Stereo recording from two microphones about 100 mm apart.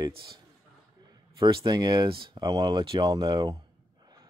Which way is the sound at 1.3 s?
50° right (ahead or behind).